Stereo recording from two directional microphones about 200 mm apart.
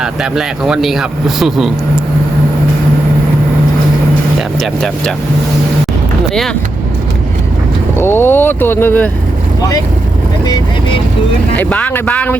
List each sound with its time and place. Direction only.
0.0 s speech: 5° right (ahead or behind)
4.4 s speech: centre (ahead or behind)
6.3 s speech: centre (ahead or behind)
7.9 s speech: 10° left (ahead or behind)
11.5 s speech: 5° left (ahead or behind)